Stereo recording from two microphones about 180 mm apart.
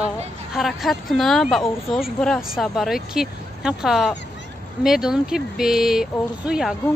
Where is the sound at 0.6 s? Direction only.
Centre (ahead or behind).